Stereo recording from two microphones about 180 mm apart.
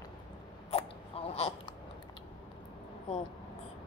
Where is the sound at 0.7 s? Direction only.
35° left (ahead or behind).